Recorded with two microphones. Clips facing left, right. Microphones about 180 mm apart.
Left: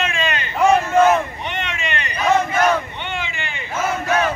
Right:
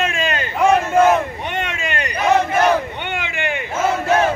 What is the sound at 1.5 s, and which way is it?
Vehicle, 45° right (ahead or behind).